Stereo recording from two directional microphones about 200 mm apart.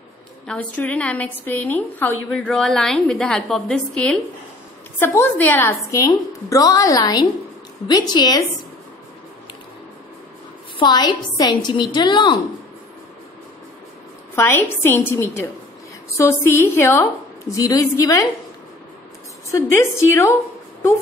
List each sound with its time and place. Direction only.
0.5 s a woman's voice: 5° left (ahead or behind)
10.8 s a woman's voice: 20° left (ahead or behind)
14.3 s a woman's voice: 10° left (ahead or behind)
19.5 s a woman's voice: 15° left (ahead or behind)